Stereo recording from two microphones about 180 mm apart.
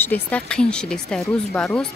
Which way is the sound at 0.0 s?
10° left (ahead or behind).